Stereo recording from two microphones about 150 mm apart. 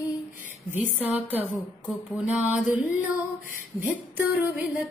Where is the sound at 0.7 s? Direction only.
10° right (ahead or behind).